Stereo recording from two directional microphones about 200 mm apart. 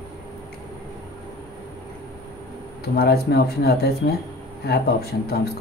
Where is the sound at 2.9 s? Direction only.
50° left (ahead or behind).